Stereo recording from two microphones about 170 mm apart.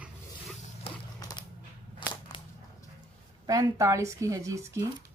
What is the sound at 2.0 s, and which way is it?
Whip, 30° left (ahead or behind).